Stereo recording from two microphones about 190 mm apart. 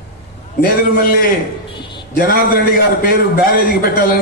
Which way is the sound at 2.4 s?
50° left (ahead or behind).